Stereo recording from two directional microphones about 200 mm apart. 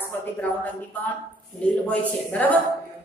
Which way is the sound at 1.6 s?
5° left (ahead or behind).